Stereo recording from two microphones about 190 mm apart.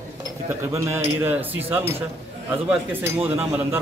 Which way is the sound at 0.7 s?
15° right (ahead or behind).